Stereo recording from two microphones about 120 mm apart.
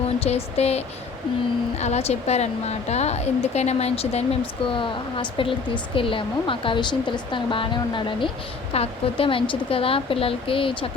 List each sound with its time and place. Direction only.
0.2 s speech: 60° left (ahead or behind)
1.8 s a woman's voice: 60° left (ahead or behind); by 10.8 s 45° left (ahead or behind)